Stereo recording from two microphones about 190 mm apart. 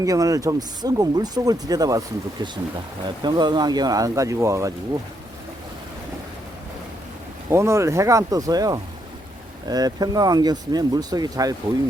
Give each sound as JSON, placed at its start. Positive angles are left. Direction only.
{"t": 0.0, "sound": "speech", "side_deg": -15}
{"t": 7.5, "sound": "speech", "side_deg": -15}